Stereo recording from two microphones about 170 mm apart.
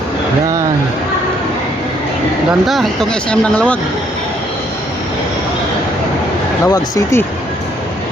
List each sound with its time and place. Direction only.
2.5 s speech: centre (ahead or behind)
6.7 s speech: 20° left (ahead or behind)